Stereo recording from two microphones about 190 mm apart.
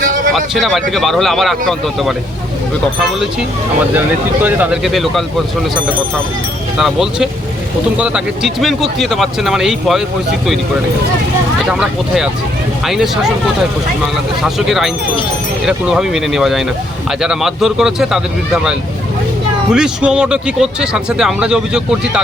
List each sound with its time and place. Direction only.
0.0 s a sound: 45° right (ahead or behind)
0.3 s speech: centre (ahead or behind)
4.4 s speech: 10° right (ahead or behind)
6.7 s speech: centre (ahead or behind)
11.7 s speech: 5° right (ahead or behind)
14.4 s speech: centre (ahead or behind)